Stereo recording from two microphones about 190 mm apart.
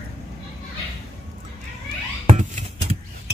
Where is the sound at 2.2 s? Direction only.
35° right (ahead or behind).